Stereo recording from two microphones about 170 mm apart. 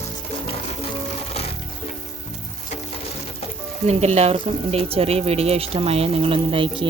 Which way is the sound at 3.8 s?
40° right (ahead or behind).